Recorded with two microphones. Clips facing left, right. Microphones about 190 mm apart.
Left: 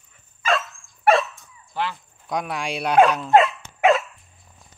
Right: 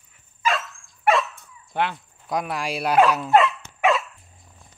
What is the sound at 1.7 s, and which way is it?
Speech, 60° right (ahead or behind).